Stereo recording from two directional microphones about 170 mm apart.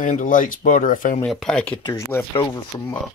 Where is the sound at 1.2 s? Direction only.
Centre (ahead or behind).